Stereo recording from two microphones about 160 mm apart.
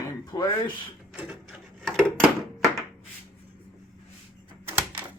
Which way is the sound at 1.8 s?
Centre (ahead or behind).